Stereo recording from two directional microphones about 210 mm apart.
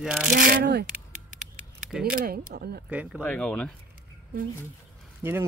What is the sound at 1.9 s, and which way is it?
Speech, centre (ahead or behind).